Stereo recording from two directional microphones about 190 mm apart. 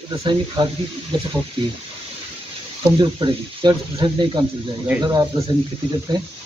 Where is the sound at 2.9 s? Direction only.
25° right (ahead or behind).